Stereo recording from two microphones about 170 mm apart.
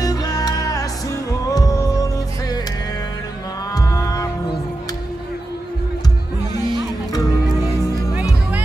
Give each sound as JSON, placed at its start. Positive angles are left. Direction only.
{"t": 0.0, "sound": "music", "side_deg": 20}
{"t": 3.7, "sound": "music", "side_deg": 20}
{"t": 6.7, "sound": "music", "side_deg": 20}